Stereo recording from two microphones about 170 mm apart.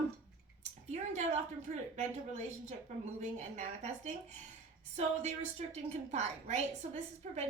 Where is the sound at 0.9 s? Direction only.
40° right (ahead or behind).